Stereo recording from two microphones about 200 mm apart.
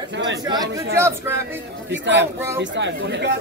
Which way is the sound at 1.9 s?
60° right (ahead or behind).